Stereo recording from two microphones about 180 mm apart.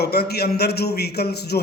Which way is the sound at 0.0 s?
60° left (ahead or behind).